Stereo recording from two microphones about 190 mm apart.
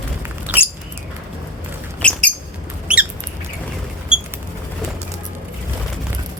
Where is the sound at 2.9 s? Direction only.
5° right (ahead or behind).